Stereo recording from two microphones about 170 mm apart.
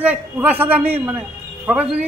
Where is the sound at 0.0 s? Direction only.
10° right (ahead or behind).